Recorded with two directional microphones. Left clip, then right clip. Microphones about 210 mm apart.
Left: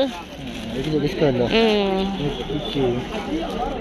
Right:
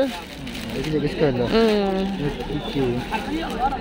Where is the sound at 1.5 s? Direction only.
20° right (ahead or behind).